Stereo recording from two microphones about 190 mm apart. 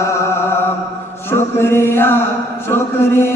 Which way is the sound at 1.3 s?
15° left (ahead or behind).